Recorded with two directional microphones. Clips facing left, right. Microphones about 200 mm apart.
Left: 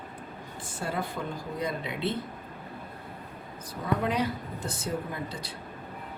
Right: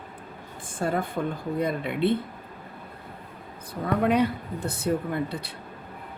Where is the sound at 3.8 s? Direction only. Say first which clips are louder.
Right 5 dB; 55° right (ahead or behind).